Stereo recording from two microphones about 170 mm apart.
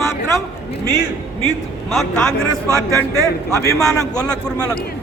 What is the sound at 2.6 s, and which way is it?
Speech, 20° right (ahead or behind).